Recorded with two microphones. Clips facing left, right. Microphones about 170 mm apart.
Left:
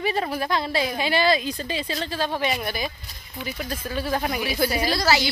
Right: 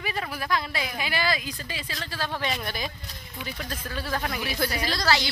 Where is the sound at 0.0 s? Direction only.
30° left (ahead or behind).